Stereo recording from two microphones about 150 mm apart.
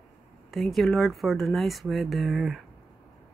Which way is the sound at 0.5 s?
Centre (ahead or behind).